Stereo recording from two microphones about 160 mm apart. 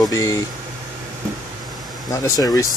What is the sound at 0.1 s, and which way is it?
Speech, 20° left (ahead or behind).